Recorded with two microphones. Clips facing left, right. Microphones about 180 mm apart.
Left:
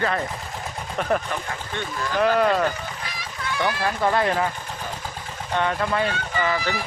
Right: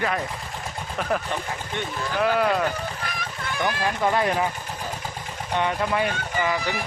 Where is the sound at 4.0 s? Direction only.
10° right (ahead or behind).